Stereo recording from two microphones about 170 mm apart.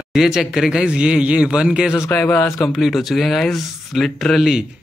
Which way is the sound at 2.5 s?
Centre (ahead or behind).